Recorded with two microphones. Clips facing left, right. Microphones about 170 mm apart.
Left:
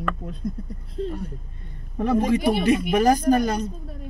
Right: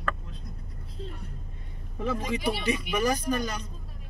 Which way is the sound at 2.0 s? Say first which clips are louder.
Left 9 dB; 55° left (ahead or behind).